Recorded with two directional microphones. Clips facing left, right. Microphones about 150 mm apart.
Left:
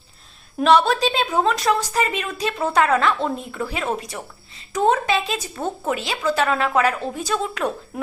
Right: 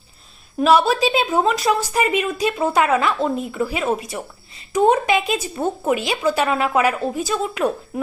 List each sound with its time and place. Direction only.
0.6 s speech: 5° right (ahead or behind)